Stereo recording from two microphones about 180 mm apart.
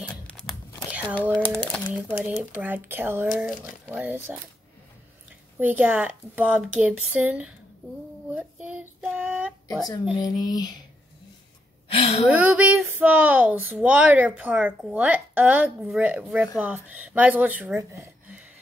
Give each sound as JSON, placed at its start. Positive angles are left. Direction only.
{"t": 0.3, "sound": "tearing", "side_deg": 0}
{"t": 0.8, "sound": "a sound", "side_deg": -10}
{"t": 1.4, "sound": "crumpling", "side_deg": 5}
{"t": 1.9, "sound": "speech", "side_deg": -10}
{"t": 5.6, "sound": "speech", "side_deg": -10}
{"t": 8.4, "sound": "child singing", "side_deg": -5}
{"t": 10.2, "sound": "speech", "side_deg": 20}
{"t": 11.9, "sound": "speech", "side_deg": 30}
{"t": 12.3, "sound": "speech", "side_deg": -10}